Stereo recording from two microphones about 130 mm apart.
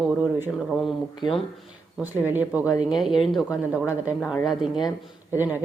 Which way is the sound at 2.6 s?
25° left (ahead or behind).